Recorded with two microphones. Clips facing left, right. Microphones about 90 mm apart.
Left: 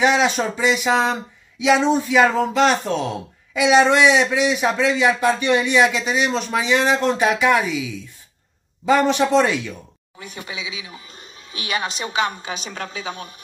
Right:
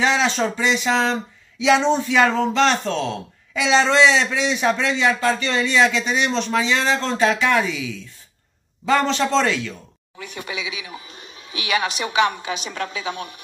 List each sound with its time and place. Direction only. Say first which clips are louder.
0.0 s speech: left 2 dB; 10° left (ahead or behind)
10.1 s a woman's voice: right 2 dB; 30° left (ahead or behind)